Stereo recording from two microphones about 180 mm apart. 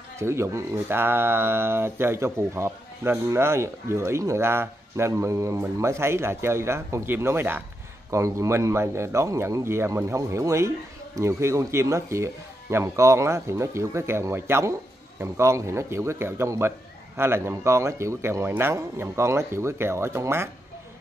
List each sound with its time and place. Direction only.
0.2 s speech: 15° right (ahead or behind)